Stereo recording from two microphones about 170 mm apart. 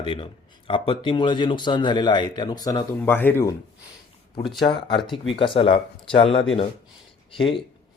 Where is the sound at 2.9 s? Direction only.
10° left (ahead or behind).